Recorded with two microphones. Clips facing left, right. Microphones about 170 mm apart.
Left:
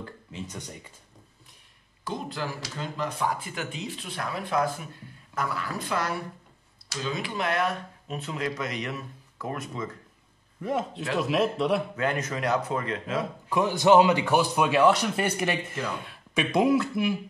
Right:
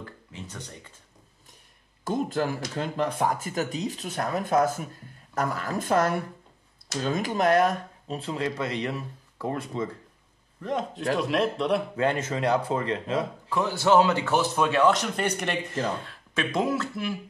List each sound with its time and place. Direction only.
0.6 s speech: 10° left (ahead or behind)
2.0 s speech: 50° right (ahead or behind); by 9.8 s 30° right (ahead or behind)
10.6 s a man's voice: 5° left (ahead or behind)
12.0 s speech: 30° right (ahead or behind)
13.5 s speech: 15° left (ahead or behind)